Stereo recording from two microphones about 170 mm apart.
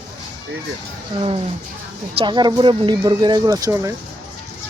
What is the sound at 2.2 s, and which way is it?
Speech, 25° right (ahead or behind).